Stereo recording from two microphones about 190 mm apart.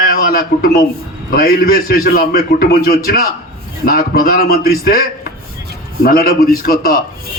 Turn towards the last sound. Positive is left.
turn(degrees=50)  # may be behind; listen again after turning